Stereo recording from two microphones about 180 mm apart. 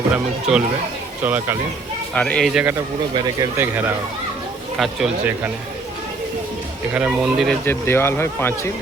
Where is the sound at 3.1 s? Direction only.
20° right (ahead or behind); by 5.5 s 5° right (ahead or behind).